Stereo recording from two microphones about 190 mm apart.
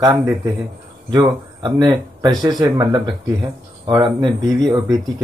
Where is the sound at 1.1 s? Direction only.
25° right (ahead or behind).